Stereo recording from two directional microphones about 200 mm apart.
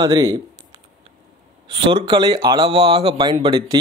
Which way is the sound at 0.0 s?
20° right (ahead or behind).